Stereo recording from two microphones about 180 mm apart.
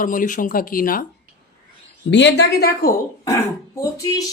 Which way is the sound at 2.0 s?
80° left.